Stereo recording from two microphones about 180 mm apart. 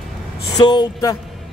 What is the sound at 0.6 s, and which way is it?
Speech, 25° left (ahead or behind).